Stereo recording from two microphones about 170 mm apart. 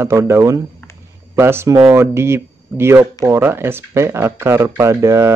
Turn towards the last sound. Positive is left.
turn(degrees=-15)  # may be behind; listen again after turning